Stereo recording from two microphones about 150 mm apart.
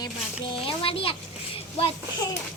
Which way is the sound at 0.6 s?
40° left (ahead or behind).